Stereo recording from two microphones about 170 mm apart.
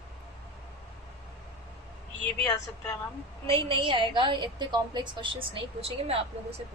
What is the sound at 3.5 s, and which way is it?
A woman's voice, 30° right (ahead or behind).